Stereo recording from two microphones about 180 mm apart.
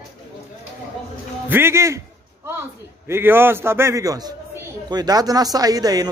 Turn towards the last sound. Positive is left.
turn(degrees=-20)  # may be behind; listen again after turning